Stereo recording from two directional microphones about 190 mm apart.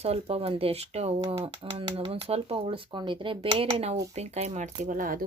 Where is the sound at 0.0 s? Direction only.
30° right (ahead or behind).